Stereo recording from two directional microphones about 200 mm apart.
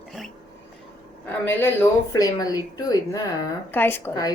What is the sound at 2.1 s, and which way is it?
A woman's voice, 20° left (ahead or behind).